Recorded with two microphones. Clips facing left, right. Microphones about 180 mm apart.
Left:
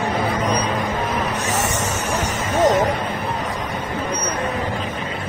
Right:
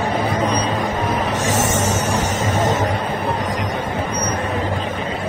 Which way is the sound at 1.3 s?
90° right.